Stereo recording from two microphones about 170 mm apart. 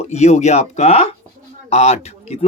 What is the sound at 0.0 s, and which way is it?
Speech, 40° left (ahead or behind).